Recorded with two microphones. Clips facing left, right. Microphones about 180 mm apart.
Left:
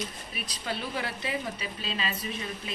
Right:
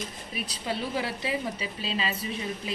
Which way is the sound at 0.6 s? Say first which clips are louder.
Right 3 dB; 30° right (ahead or behind).